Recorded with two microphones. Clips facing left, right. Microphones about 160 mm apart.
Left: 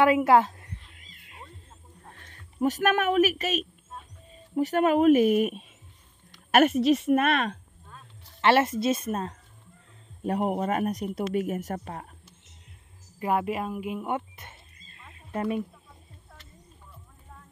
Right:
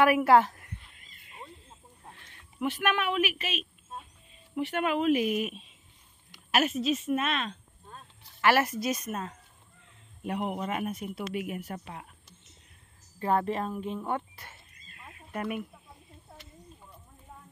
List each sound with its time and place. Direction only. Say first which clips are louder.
0.0 s a woman's voice: left 1 dB; 20° left (ahead or behind)
2.1 s a woman's voice: left 7 dB; 40° left (ahead or behind); by 7.5 s 60° left (ahead or behind)
8.4 s speech: left 3 dB; 25° left (ahead or behind); by 12.1 s 45° left (ahead or behind)
13.2 s speech: left 1 dB; 10° left (ahead or behind); by 15.6 s 30° left (ahead or behind)